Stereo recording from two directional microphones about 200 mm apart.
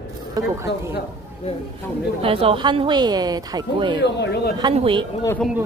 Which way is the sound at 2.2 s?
30° right (ahead or behind).